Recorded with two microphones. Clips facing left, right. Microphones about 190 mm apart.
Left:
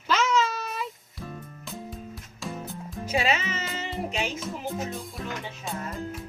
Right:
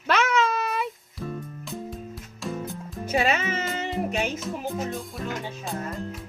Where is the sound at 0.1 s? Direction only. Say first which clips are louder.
Right 2 dB; 60° right (ahead or behind).